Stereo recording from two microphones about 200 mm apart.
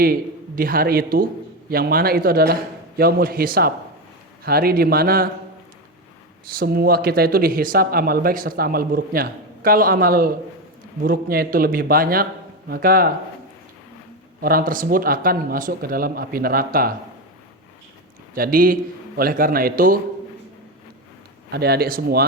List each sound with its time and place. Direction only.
0.0 s speech: 45° right (ahead or behind)
6.6 s speech: 50° right (ahead or behind)
14.4 s speech: 45° right (ahead or behind)
18.3 s speech: 45° right (ahead or behind)
21.5 s speech: 55° right (ahead or behind)